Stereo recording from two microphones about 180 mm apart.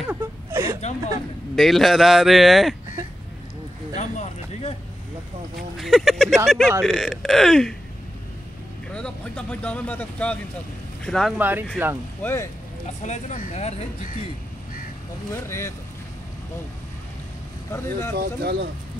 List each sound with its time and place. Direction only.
0.1 s whimper: 15° right (ahead or behind)
1.5 s speech: centre (ahead or behind)
3.9 s a sound: 40° left (ahead or behind)
5.8 s speech: centre (ahead or behind)
8.9 s speech: 5° left (ahead or behind)
11.3 s speech: 10° right (ahead or behind)
12.2 s speech: 10° left (ahead or behind)
13.0 s speech: 40° left (ahead or behind)
15.3 s speech: 15° left (ahead or behind)
17.6 s speech: 15° left (ahead or behind)
18.1 s speech: 60° right (ahead or behind)